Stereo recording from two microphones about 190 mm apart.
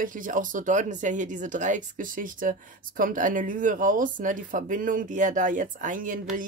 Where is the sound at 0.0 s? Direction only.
45° right (ahead or behind).